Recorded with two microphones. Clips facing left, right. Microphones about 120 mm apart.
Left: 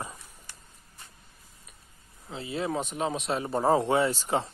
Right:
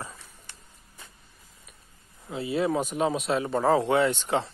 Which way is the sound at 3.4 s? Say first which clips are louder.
Even; 15° left (ahead or behind).